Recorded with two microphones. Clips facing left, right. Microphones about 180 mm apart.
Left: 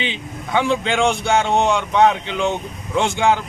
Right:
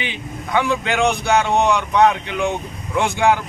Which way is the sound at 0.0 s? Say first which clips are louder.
Left 1 dB; 25° left (ahead or behind).